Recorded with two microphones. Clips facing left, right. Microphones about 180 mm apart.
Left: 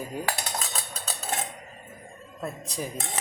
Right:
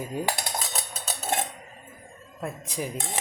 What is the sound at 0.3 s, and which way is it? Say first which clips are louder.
Cutlery: right 1 dB; 20° right (ahead or behind).